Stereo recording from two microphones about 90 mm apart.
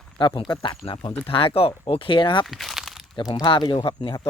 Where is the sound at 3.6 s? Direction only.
65° left (ahead or behind).